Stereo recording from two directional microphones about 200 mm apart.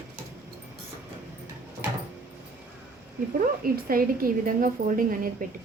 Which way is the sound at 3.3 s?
45° right (ahead or behind).